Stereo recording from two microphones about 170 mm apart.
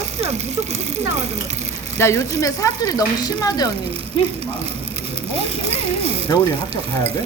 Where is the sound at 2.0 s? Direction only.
15° left (ahead or behind).